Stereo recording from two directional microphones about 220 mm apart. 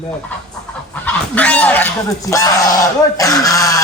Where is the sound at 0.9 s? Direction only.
5° left (ahead or behind).